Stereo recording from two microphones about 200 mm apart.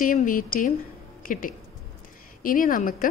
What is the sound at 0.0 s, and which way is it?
A woman's voice, 40° left (ahead or behind).